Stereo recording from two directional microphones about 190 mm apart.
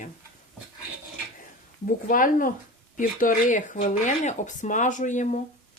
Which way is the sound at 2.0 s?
45° left (ahead or behind).